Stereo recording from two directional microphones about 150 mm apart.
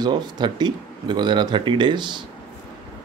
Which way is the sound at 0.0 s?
30° right (ahead or behind).